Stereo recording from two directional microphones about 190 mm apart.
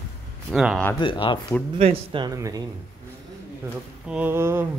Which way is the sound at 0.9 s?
25° left (ahead or behind).